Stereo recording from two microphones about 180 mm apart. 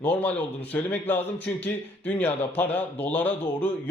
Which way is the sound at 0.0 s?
10° left (ahead or behind).